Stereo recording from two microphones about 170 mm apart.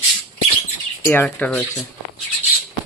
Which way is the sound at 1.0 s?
15° left (ahead or behind).